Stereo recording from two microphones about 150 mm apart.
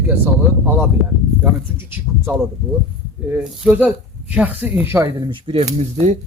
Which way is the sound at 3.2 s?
5° right (ahead or behind).